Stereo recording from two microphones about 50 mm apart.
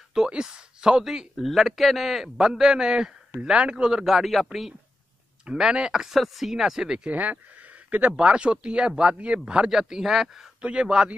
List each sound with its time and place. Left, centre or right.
0.3 s speech: centre
1.0 s a man's voice: centre
5.4 s a man's voice: centre
7.1 s a man's voice: right; by 10.5 s centre
10.6 s speech: centre